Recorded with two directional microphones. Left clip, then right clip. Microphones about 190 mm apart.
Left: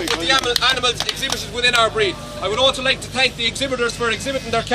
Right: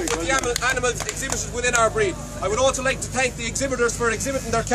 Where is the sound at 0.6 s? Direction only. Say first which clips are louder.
Left 5 dB; 30° right (ahead or behind).